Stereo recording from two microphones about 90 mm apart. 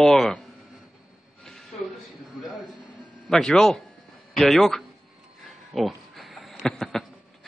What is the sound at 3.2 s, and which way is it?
A man's voice, 5° left (ahead or behind).